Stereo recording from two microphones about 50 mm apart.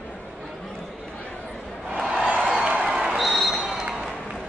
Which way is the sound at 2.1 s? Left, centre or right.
Right.